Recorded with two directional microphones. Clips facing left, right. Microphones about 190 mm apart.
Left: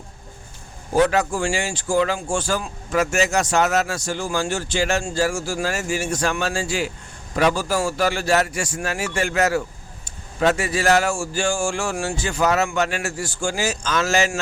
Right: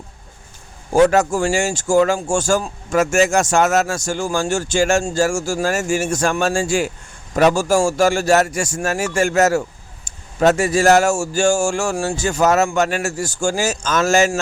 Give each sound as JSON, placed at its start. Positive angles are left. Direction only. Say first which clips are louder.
{"t": 0.9, "sound": "a man's voice", "louder": "right 5 dB", "side_deg": -45}